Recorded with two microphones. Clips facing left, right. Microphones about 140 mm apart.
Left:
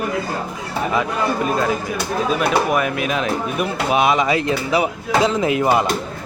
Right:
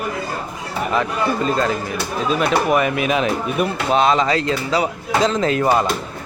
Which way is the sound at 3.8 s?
10° left (ahead or behind).